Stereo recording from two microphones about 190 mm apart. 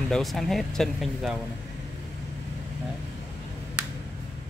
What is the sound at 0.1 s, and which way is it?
Speech, centre (ahead or behind).